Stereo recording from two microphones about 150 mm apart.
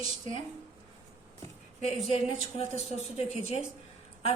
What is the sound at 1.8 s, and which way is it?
Speech, 40° left (ahead or behind).